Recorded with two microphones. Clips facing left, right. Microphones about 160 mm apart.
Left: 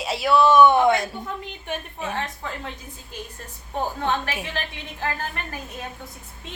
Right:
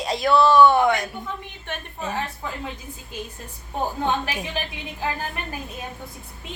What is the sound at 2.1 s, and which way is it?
Speech, 10° right (ahead or behind).